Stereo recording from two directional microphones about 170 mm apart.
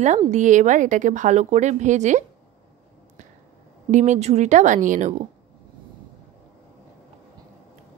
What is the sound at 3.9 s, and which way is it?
A woman's voice, 45° right (ahead or behind).